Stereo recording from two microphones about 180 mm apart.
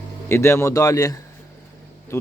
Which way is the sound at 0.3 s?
15° left (ahead or behind).